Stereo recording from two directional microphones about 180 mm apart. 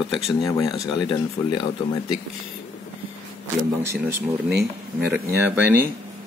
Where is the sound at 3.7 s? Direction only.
10° right (ahead or behind).